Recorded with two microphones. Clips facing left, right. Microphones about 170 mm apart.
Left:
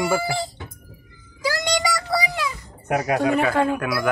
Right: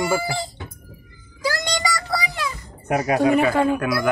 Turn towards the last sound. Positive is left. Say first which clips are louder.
# right 2 dB
turn(degrees=0)  # may be behind; listen again after turning